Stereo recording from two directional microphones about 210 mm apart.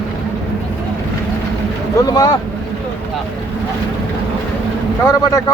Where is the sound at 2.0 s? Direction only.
15° left (ahead or behind).